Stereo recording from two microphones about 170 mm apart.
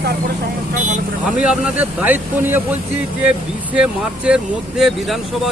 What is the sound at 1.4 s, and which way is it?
Speech, 10° right (ahead or behind).